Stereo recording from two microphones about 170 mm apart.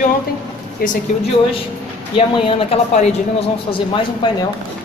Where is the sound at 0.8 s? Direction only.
60° left (ahead or behind).